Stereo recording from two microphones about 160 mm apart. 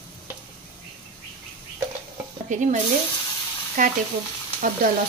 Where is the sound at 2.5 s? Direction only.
50° right (ahead or behind).